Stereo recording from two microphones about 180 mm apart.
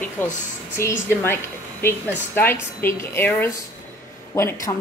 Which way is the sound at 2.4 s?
15° left (ahead or behind).